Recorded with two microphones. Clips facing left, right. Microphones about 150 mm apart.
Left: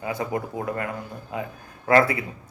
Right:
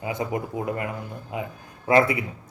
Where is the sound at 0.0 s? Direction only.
20° right (ahead or behind).